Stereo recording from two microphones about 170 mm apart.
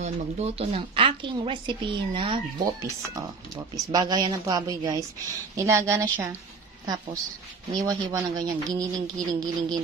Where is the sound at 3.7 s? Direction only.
25° right (ahead or behind).